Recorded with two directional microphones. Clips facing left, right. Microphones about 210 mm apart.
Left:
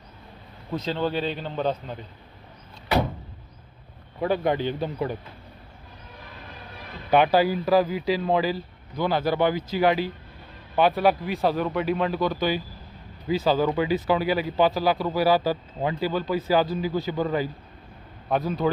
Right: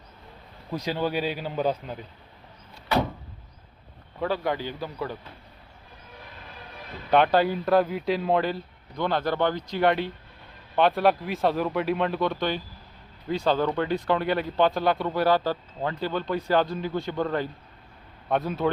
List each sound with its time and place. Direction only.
0.7 s a man's voice: 10° right (ahead or behind)
4.2 s speech: 20° left (ahead or behind)
7.1 s speech: 5° left (ahead or behind)